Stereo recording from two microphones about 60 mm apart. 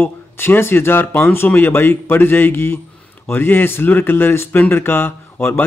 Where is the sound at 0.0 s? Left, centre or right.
Left.